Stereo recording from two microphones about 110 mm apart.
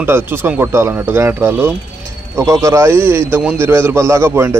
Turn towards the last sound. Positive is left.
turn(degrees=-20)  # may be behind; listen again after turning